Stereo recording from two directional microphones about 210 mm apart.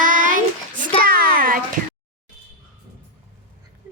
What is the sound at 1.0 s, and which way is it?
Speech, 45° right (ahead or behind).